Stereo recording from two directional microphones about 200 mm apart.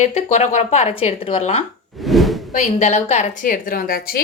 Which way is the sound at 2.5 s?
35° left (ahead or behind).